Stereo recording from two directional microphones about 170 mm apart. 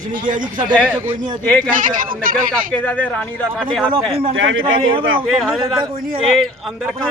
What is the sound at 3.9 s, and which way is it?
Speech, 35° right (ahead or behind).